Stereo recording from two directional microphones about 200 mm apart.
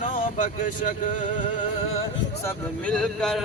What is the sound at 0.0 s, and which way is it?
Speech, 40° left (ahead or behind).